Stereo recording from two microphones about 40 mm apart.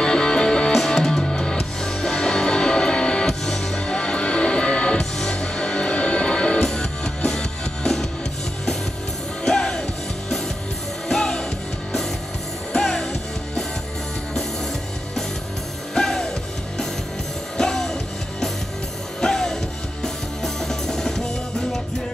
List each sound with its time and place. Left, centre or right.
0.0 s music: centre
6.6 s music: centre
9.4 s music: centre
11.1 s music: centre
12.7 s music: centre
15.9 s music: centre
17.6 s music: centre
19.2 s music: centre